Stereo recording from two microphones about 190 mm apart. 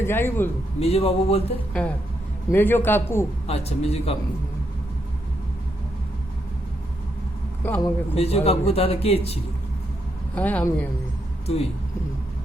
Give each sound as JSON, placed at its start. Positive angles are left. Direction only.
{"t": 0.0, "sound": "a man's voice", "side_deg": 10}
{"t": 0.8, "sound": "a man's voice", "side_deg": 30}
{"t": 1.8, "sound": "a man's voice", "side_deg": 5}
{"t": 3.4, "sound": "a man's voice", "side_deg": 35}
{"t": 7.6, "sound": "a man's voice", "side_deg": 10}
{"t": 8.1, "sound": "a man's voice", "side_deg": 30}
{"t": 10.3, "sound": "a man's voice", "side_deg": 10}